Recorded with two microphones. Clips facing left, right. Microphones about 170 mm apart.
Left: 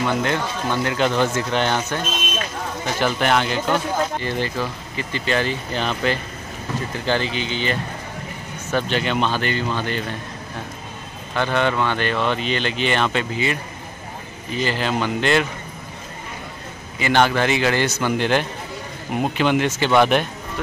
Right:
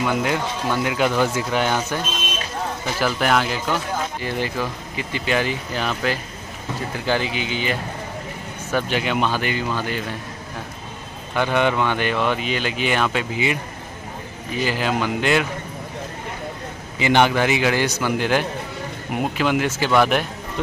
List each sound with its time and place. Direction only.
0.0 s speech: 10° right (ahead or behind)
3.0 s speech: 5° right (ahead or behind)
11.3 s speech: 15° right (ahead or behind)
14.6 s speech: 10° right (ahead or behind)
17.0 s speech: 15° right (ahead or behind)